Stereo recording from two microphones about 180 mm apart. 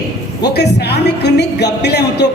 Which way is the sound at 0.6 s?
70° left (ahead or behind).